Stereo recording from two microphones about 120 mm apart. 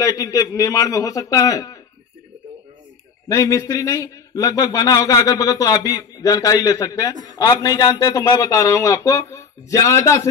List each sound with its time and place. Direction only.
0.0 s speech: 30° left (ahead or behind)
3.3 s speech: 25° left (ahead or behind)